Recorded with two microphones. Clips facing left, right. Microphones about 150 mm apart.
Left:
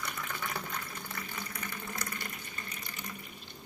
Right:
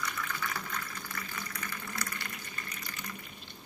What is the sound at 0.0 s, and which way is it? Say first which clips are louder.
Water: right 1 dB; 25° left (ahead or behind).